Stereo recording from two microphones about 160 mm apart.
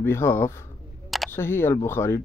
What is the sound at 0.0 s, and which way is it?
Speech, 15° left (ahead or behind).